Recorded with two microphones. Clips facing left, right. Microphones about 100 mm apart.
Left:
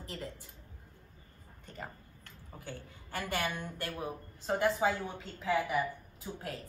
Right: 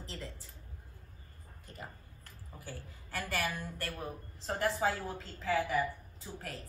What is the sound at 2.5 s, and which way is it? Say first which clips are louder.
A woman's voice: left 2 dB; 25° left (ahead or behind).